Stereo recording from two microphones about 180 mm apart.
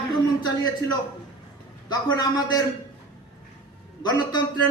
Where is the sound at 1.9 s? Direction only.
20° left (ahead or behind).